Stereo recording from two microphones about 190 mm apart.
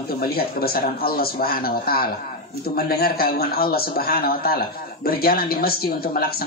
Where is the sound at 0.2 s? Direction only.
55° left (ahead or behind).